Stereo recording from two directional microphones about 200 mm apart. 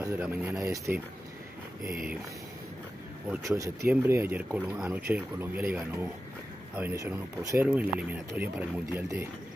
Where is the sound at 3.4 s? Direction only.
15° right (ahead or behind).